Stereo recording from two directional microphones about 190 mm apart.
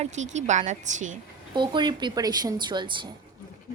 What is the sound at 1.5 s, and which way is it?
Speech, 25° right (ahead or behind).